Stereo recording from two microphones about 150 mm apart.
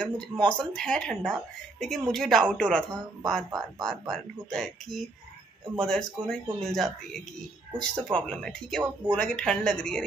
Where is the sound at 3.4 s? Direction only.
25° right (ahead or behind).